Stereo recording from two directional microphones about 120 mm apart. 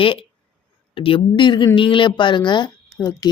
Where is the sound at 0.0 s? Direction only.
50° left (ahead or behind).